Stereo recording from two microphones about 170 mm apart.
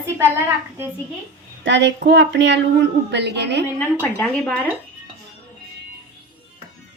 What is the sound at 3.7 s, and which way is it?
Speech, 15° left (ahead or behind).